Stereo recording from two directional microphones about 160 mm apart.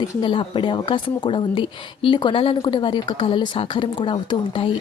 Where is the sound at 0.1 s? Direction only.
30° left (ahead or behind).